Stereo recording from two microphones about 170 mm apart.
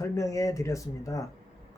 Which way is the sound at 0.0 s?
20° left (ahead or behind).